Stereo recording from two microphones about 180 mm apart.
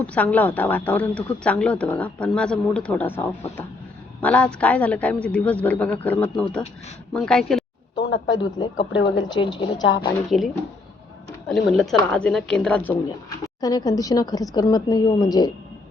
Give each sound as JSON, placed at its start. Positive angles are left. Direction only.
{"t": 0.0, "sound": "a woman's voice", "side_deg": 10}
{"t": 7.9, "sound": "a sound", "side_deg": 90}
{"t": 8.4, "sound": "a woman's voice", "side_deg": 25}
{"t": 9.8, "sound": "a woman's voice", "side_deg": 90}
{"t": 10.2, "sound": "a woman's voice", "side_deg": 0}
{"t": 13.6, "sound": "a woman's voice", "side_deg": 20}